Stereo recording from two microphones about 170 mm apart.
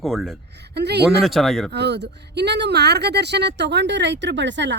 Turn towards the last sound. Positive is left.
turn(degrees=-90)